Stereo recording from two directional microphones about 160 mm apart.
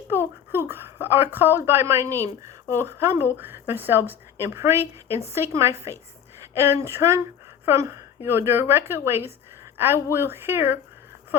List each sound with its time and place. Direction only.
0.7 s speech: 15° right (ahead or behind)